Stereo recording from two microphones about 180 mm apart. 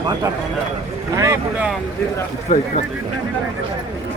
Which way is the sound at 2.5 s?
45° left (ahead or behind).